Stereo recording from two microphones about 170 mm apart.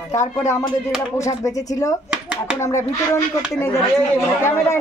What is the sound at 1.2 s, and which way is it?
A man's voice, 20° left (ahead or behind).